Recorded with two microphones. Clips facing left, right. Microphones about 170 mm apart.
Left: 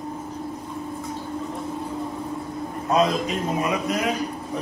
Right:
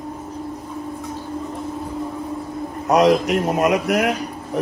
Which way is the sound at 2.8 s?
75° right (ahead or behind).